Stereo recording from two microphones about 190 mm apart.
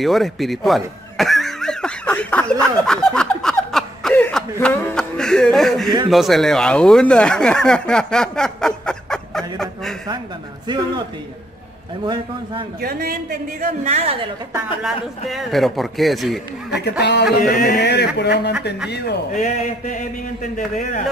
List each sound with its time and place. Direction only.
0.0 s snicker: centre (ahead or behind)
6.0 s speech: centre (ahead or behind)
12.8 s a man's voice: 50° right (ahead or behind); by 14.3 s 35° right (ahead or behind)
14.8 s a man's voice: centre (ahead or behind)
17.0 s speech: 60° left (ahead or behind)
19.3 s speech: 40° left (ahead or behind)